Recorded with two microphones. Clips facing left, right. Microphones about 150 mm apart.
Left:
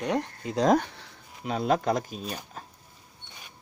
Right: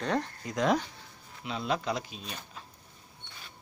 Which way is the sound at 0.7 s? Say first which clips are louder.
Left 6 dB; 65° left (ahead or behind).